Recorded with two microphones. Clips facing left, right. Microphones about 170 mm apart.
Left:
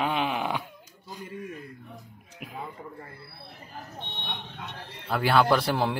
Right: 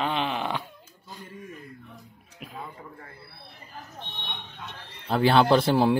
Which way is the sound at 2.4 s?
15° left (ahead or behind).